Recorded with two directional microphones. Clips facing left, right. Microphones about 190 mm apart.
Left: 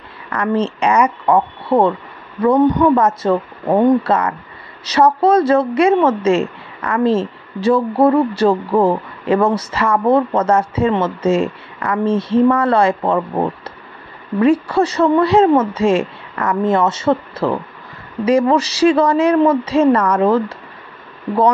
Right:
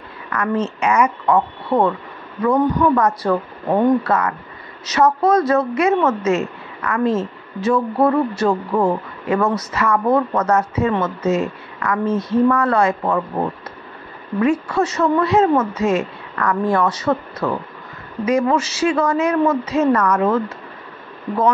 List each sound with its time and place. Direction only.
0.3 s a woman's voice: 30° left (ahead or behind)